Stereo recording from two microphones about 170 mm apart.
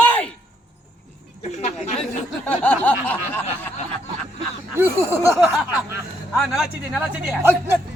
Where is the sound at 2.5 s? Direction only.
10° left (ahead or behind).